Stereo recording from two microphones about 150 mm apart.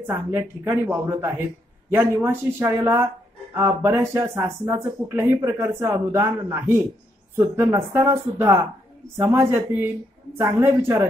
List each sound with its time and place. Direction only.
0.0 s speech: 20° right (ahead or behind)